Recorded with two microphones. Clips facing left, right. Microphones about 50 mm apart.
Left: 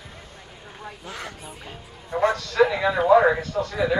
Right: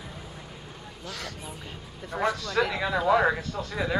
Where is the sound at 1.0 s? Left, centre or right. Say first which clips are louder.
Left 1 dB; left.